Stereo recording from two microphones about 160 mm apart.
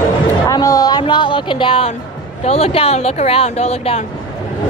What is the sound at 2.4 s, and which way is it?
Speech, 40° left (ahead or behind).